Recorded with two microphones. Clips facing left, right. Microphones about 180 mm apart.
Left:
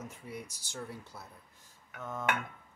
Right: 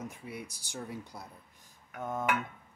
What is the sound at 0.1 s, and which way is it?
Speech, 10° right (ahead or behind).